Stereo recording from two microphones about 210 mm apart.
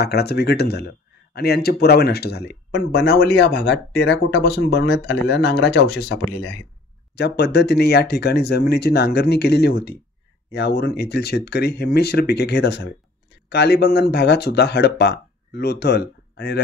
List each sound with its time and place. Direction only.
0.0 s speech: 50° left (ahead or behind)